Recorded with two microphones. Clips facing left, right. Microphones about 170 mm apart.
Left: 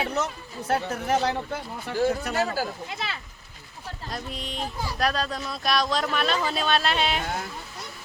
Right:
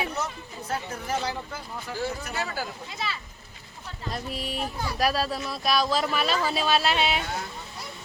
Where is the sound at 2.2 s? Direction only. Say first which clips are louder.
Left 6 dB; 45° left (ahead or behind).